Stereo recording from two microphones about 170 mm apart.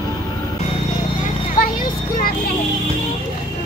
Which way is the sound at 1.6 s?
55° left (ahead or behind).